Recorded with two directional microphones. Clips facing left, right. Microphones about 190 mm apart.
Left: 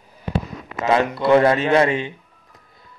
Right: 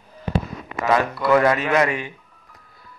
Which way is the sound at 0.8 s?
25° left (ahead or behind).